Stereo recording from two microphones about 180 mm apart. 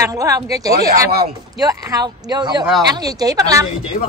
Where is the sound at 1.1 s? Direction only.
60° right (ahead or behind).